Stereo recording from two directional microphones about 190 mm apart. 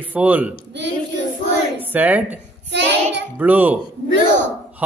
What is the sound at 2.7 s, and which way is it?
Child singing, 65° right (ahead or behind).